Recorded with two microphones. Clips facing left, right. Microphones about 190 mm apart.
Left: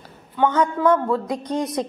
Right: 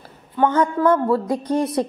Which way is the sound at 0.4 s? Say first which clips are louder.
Right 1 dB; 10° right (ahead or behind).